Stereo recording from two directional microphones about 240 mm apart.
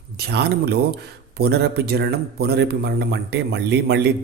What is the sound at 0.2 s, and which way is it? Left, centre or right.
A man's voice, right.